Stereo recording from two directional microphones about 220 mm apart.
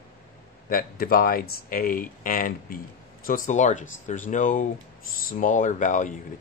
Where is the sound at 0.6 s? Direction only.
40° left (ahead or behind).